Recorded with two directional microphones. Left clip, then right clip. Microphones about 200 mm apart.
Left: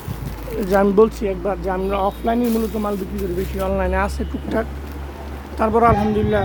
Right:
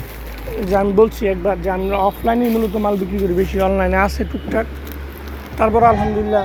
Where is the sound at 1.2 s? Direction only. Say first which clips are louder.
Right 4 dB; centre (ahead or behind).